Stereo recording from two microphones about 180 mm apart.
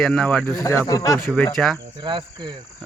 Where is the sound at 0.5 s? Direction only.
15° left (ahead or behind).